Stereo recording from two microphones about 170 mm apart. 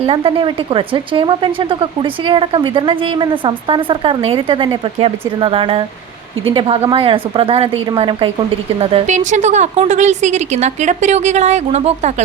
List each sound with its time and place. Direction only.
0.0 s speech: 30° right (ahead or behind)